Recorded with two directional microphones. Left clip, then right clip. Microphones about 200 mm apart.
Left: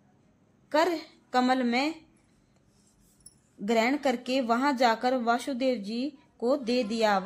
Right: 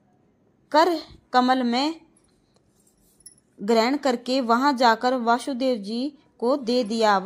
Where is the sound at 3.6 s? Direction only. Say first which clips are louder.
Right 5 dB; 15° right (ahead or behind).